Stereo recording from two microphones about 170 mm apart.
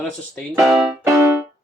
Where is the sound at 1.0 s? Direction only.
15° right (ahead or behind).